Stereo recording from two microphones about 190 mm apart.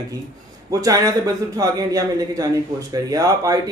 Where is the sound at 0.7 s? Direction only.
15° right (ahead or behind).